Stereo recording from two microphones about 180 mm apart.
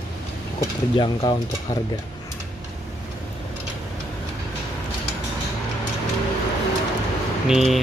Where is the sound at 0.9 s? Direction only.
25° left (ahead or behind).